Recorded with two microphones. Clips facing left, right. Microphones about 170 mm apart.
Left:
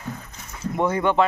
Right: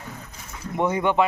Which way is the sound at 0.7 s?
15° right (ahead or behind).